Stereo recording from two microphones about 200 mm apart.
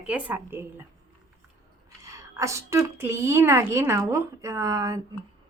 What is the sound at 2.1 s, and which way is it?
A woman's voice, 15° right (ahead or behind).